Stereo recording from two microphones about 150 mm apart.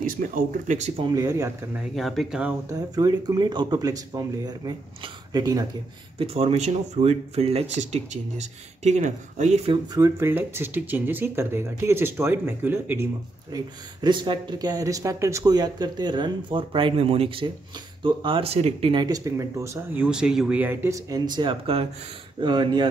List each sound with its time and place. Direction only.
0.0 s speech: 65° right (ahead or behind); by 1.0 s 50° right (ahead or behind)
1.0 s speech: 25° right (ahead or behind)
1.8 s speech: centre (ahead or behind)
2.7 s speech: 25° right (ahead or behind)
6.1 s speech: 40° right (ahead or behind)
9.9 s speech: 20° right (ahead or behind); by 18.9 s 40° right (ahead or behind)
18.9 s speech: 25° right (ahead or behind)